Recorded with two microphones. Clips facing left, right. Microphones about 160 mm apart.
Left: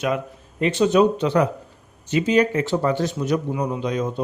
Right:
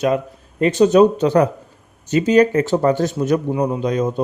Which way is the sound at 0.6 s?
40° right (ahead or behind).